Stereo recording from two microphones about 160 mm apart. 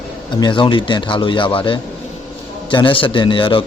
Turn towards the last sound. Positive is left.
turn(degrees=30)  # may be behind; listen again after turning